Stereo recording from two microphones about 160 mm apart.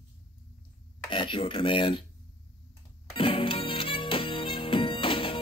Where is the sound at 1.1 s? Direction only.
30° left (ahead or behind).